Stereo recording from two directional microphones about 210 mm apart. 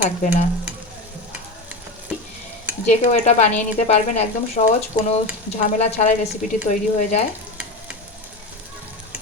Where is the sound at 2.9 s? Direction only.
35° left (ahead or behind).